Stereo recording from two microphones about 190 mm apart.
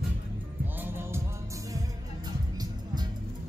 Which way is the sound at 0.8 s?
10° right (ahead or behind).